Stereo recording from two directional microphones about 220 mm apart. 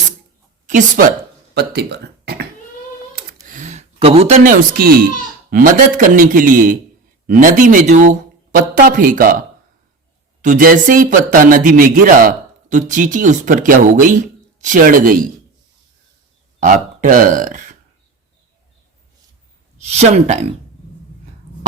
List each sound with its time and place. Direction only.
0.7 s speech: 35° right (ahead or behind)
1.5 s a sound: 50° right (ahead or behind)
3.4 s a sound: 35° right (ahead or behind)
4.8 s a child's voice: 45° right (ahead or behind)
10.4 s speech: 40° right (ahead or behind)
16.6 s speech: 35° right (ahead or behind)
19.9 s speech: 30° right (ahead or behind)